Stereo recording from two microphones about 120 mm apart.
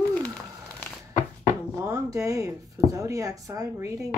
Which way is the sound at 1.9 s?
30° right (ahead or behind).